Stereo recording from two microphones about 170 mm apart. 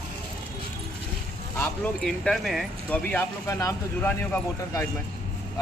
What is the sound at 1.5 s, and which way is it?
Speech, 5° left (ahead or behind).